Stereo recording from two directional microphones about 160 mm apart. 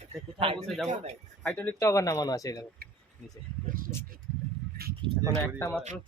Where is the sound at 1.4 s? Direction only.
10° left (ahead or behind).